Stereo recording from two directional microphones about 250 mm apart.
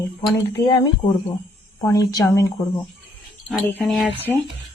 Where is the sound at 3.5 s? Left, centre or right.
Centre.